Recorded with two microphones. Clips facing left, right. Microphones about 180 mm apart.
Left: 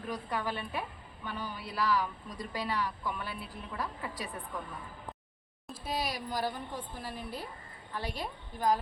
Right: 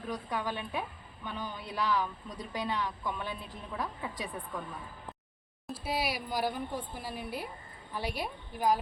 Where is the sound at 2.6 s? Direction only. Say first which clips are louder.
Even; 20° right (ahead or behind).